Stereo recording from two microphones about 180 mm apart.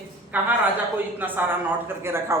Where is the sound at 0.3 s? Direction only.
10° right (ahead or behind).